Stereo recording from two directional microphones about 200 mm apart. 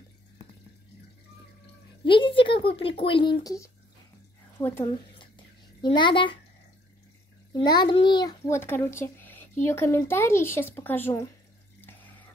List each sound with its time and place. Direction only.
2.0 s speech: 25° left (ahead or behind)
5.8 s a child's voice: 25° left (ahead or behind)
7.5 s a child's voice: 20° left (ahead or behind)